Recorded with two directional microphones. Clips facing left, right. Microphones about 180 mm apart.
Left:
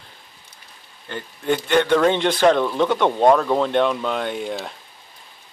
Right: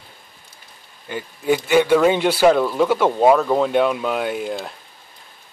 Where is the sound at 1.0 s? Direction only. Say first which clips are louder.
Right 3 dB; 10° right (ahead or behind).